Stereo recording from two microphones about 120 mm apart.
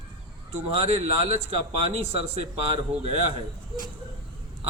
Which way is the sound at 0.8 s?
60° right (ahead or behind).